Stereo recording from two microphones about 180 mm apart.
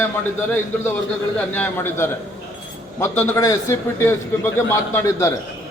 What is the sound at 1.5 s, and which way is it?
A man's voice, 10° left (ahead or behind).